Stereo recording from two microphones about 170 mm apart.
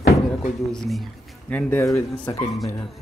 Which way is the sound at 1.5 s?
15° left (ahead or behind).